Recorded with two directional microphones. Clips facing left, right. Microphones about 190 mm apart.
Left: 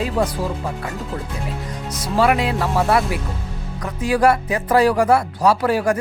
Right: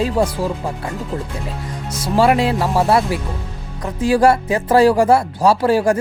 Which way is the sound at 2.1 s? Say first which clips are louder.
Right 3 dB; 30° right (ahead or behind).